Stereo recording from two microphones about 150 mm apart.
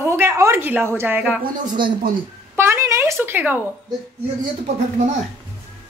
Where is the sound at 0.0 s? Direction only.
20° right (ahead or behind).